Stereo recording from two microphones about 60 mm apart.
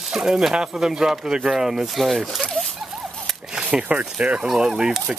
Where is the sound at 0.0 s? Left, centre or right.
Centre.